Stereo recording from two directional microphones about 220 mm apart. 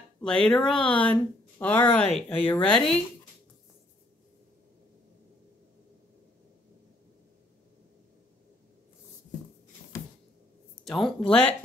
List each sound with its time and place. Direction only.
0.2 s speech: 5° left (ahead or behind)
10.8 s speech: centre (ahead or behind)